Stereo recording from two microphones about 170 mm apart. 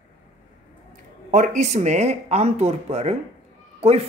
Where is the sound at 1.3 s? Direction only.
50° right (ahead or behind).